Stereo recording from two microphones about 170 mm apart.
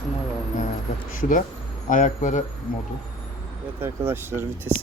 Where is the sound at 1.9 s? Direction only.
50° left (ahead or behind).